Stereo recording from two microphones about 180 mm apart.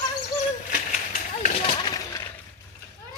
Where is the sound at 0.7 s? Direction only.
45° left (ahead or behind).